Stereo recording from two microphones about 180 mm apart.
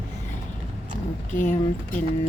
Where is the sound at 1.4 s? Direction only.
45° left (ahead or behind).